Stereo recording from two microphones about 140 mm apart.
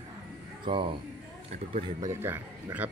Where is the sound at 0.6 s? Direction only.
40° right (ahead or behind).